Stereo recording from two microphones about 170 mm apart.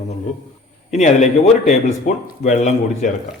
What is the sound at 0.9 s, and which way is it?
A man's voice, 45° left (ahead or behind).